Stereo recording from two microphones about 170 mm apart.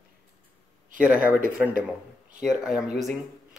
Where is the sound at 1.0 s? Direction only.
5° right (ahead or behind).